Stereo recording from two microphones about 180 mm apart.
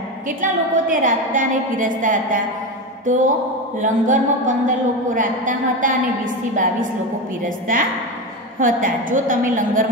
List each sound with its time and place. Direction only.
0.4 s a woman's voice: 50° right (ahead or behind)
3.8 s a woman's voice: 45° right (ahead or behind)